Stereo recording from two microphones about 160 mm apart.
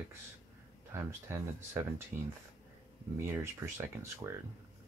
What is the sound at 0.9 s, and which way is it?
Speech, 15° right (ahead or behind).